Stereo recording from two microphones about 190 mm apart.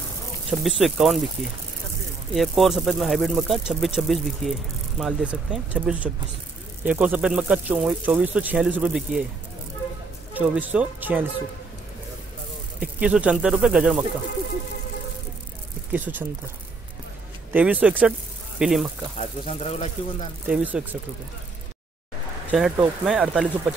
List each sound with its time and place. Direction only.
0.5 s speech: centre (ahead or behind)
2.3 s a man's voice: centre (ahead or behind)
10.3 s a man's voice: 10° right (ahead or behind)
12.8 s speech: 5° right (ahead or behind)
15.9 s a man's voice: 10° right (ahead or behind)
17.5 s a man's voice: 10° right (ahead or behind)
19.1 s speech: 35° left (ahead or behind)
20.4 s a man's voice: 5° right (ahead or behind)
22.5 s speech: 5° right (ahead or behind)